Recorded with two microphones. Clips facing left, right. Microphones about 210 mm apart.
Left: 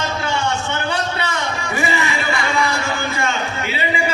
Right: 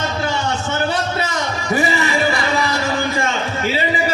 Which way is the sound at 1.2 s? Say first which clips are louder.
Right 1 dB; 40° right (ahead or behind).